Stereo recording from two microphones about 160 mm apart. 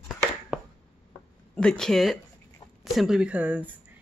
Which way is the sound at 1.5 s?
5° left (ahead or behind).